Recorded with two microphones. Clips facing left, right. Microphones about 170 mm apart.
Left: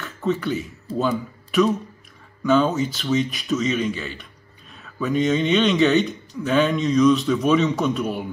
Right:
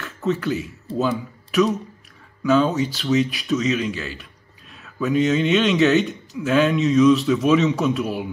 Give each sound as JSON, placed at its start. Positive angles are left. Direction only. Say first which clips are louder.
{"t": 0.0, "sound": "speech", "louder": "right 1 dB", "side_deg": 0}